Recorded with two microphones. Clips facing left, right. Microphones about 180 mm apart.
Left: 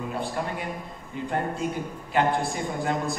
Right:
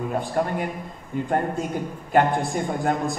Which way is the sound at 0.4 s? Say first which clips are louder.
Right 6 dB; 50° right (ahead or behind).